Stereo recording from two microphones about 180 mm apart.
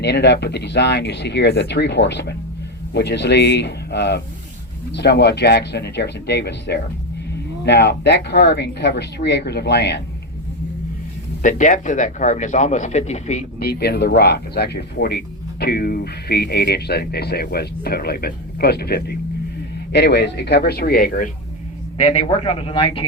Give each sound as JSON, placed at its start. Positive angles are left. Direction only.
{"t": 0.0, "sound": "speech", "side_deg": 70}
{"t": 11.4, "sound": "a man's voice", "side_deg": 45}
{"t": 13.6, "sound": "speech", "side_deg": 60}
{"t": 19.9, "sound": "speech", "side_deg": 70}
{"t": 22.0, "sound": "a man's voice", "side_deg": 30}